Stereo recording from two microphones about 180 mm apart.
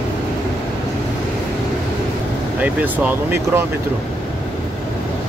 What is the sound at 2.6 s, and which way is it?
Speech, 10° right (ahead or behind).